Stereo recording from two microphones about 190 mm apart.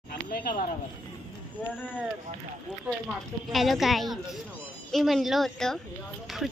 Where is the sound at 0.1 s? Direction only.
50° left (ahead or behind).